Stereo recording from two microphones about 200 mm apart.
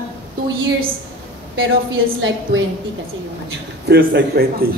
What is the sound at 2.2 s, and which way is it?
Speech, 65° right (ahead or behind).